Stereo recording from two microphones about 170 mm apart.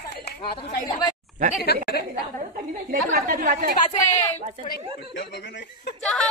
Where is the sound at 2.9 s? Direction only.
50° right (ahead or behind).